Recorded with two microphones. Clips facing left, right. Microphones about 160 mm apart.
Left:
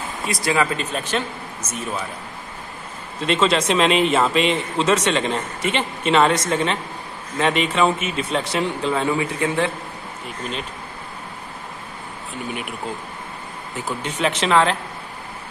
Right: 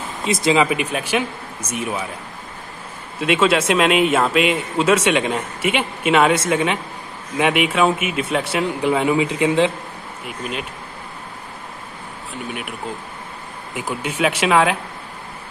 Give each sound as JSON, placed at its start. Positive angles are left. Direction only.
{"t": 0.2, "sound": "a man's voice", "side_deg": -20}
{"t": 3.2, "sound": "a man's voice", "side_deg": -5}
{"t": 8.8, "sound": "a man's voice", "side_deg": -15}
{"t": 10.2, "sound": "a man's voice", "side_deg": -5}
{"t": 13.7, "sound": "a man's voice", "side_deg": -10}